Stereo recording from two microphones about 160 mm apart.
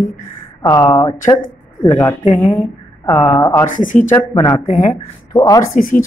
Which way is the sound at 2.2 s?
50° left (ahead or behind).